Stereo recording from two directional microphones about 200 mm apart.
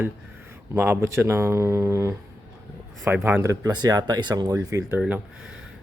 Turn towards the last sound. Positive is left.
turn(degrees=-5)  # may be behind; listen again after turning